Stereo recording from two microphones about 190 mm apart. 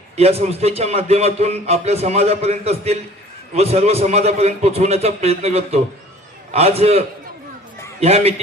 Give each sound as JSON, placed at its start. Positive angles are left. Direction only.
{"t": 0.2, "sound": "speech", "side_deg": -35}
{"t": 8.0, "sound": "speech", "side_deg": -30}